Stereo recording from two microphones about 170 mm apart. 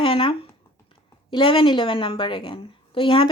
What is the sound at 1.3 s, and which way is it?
Speech, 30° left (ahead or behind).